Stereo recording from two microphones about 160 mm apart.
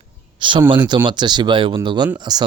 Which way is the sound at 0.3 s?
30° right (ahead or behind).